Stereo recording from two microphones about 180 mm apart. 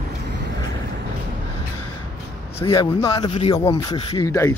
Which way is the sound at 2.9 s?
30° left (ahead or behind).